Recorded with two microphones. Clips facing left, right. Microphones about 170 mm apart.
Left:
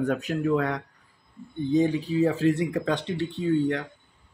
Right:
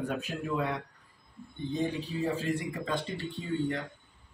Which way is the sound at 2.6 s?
70° left (ahead or behind).